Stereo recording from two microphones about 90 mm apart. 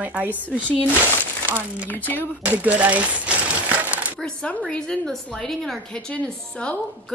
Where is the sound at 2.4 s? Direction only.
20° right (ahead or behind).